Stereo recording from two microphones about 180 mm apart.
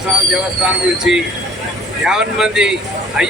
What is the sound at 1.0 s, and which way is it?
Speech, 5° right (ahead or behind).